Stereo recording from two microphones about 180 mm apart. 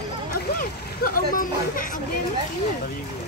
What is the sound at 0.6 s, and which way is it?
Speech, 50° left (ahead or behind).